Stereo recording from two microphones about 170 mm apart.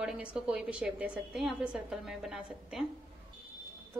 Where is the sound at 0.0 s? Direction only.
5° right (ahead or behind).